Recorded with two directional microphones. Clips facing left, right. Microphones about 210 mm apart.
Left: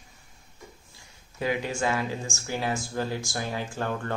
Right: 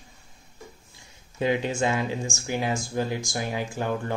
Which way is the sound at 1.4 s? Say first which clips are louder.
Right 4 dB; 25° right (ahead or behind).